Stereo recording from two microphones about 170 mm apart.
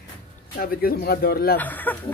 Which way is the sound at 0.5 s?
60° left (ahead or behind).